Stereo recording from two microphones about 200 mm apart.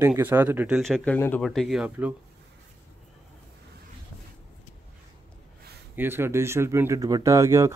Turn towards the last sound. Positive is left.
turn(degrees=-15)  # may be behind; listen again after turning